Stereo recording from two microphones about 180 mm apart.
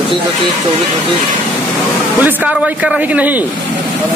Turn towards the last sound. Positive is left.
turn(degrees=-10)  # may be behind; listen again after turning